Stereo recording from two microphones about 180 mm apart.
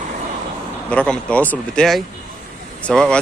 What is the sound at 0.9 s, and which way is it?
Speech, 5° left (ahead or behind).